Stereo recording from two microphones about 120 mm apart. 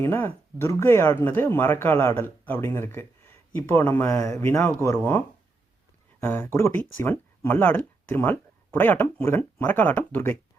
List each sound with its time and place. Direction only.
0.0 s speech: 20° left (ahead or behind)
6.1 s speech: 20° left (ahead or behind)